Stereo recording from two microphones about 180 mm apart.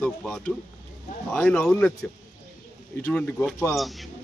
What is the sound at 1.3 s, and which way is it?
Speech, 5° left (ahead or behind).